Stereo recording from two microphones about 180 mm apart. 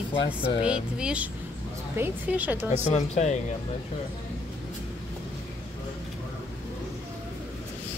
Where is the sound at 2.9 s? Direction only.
40° left (ahead or behind).